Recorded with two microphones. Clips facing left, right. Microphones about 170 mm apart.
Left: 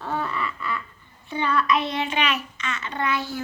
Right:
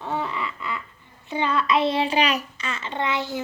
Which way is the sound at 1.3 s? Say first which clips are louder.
Even; 20° right (ahead or behind).